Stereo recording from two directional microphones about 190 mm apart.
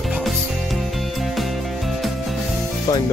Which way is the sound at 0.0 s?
Centre (ahead or behind).